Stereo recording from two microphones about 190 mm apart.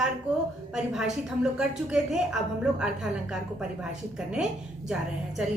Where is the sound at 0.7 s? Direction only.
Centre (ahead or behind).